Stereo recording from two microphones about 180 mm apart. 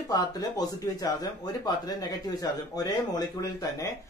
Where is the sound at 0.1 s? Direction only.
20° left (ahead or behind).